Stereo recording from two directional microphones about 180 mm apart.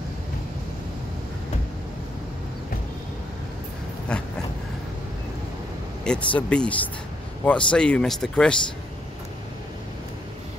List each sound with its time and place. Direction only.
4.1 s speech: 5° left (ahead or behind)
6.0 s speech: 5° left (ahead or behind)